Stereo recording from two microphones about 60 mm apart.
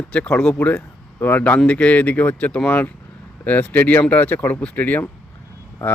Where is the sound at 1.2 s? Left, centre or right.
Left.